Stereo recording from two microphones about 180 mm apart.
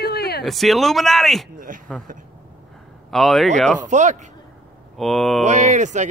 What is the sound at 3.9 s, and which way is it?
Speech, 40° right (ahead or behind).